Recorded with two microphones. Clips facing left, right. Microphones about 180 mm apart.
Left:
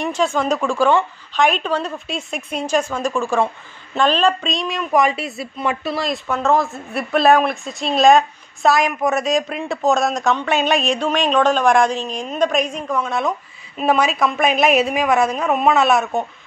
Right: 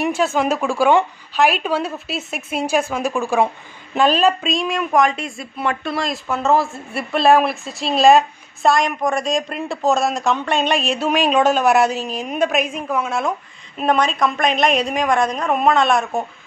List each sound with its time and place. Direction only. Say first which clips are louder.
0.0 s a woman's voice: right 1 dB; 5° right (ahead or behind)